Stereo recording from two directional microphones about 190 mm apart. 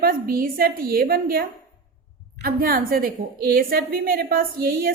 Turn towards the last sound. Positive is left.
turn(degrees=-50)  # may be behind; listen again after turning